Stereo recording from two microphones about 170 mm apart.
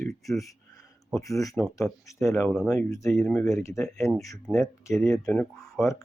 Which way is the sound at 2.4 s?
Centre (ahead or behind).